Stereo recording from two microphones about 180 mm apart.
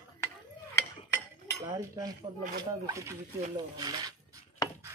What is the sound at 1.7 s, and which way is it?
Cutlery, 20° right (ahead or behind).